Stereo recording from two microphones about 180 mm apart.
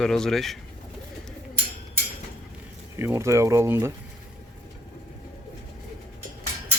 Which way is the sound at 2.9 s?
15° right (ahead or behind).